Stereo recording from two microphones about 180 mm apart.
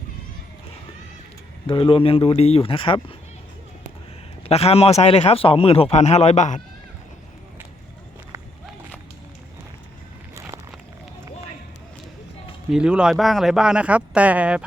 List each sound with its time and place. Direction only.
1.6 s a man's voice: 30° left (ahead or behind)
4.4 s a man's voice: 35° left (ahead or behind)
12.7 s speech: 5° right (ahead or behind)